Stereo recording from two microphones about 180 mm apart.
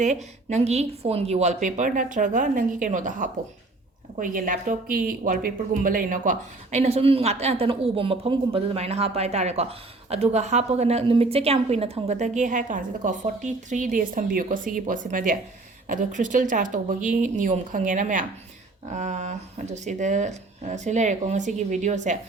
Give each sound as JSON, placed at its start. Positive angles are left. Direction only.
{"t": 0.0, "sound": "a woman's voice", "side_deg": -40}